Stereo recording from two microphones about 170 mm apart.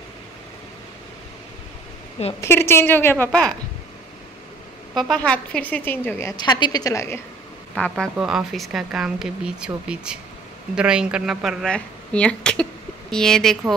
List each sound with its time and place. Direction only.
2.4 s a woman's voice: 15° left (ahead or behind)
5.1 s a woman's voice: 5° left (ahead or behind)
6.3 s a woman's voice: 25° left (ahead or behind)
7.7 s speech: 5° left (ahead or behind)